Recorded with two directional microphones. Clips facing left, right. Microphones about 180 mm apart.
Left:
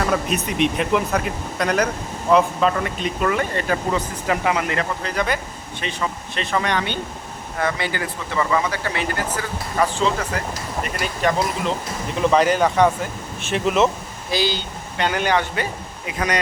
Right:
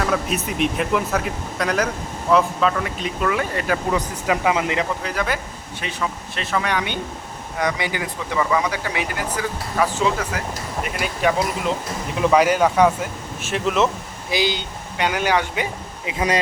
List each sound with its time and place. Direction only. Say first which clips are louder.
0.0 s speech: left 1 dB; centre (ahead or behind); by 5.1 s 15° right (ahead or behind)
5.1 s speech: left 1 dB; 5° right (ahead or behind)
14.3 s speech: even; 20° right (ahead or behind)
16.0 s a man's voice: right 2 dB; 25° right (ahead or behind)